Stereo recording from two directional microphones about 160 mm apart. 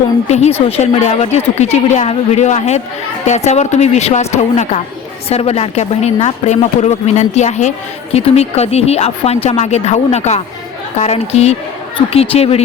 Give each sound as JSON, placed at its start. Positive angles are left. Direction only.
{"t": 0.3, "sound": "speech", "side_deg": 45}